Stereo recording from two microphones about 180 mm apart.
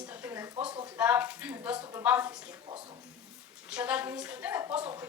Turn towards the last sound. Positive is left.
turn(degrees=-10)  # may be behind; listen again after turning